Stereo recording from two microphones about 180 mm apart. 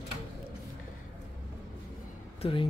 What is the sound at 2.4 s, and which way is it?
Speech, 30° left (ahead or behind).